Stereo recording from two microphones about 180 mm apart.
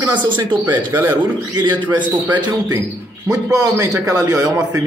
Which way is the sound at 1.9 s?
10° right (ahead or behind).